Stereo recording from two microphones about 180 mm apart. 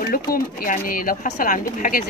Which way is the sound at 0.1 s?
55° left (ahead or behind).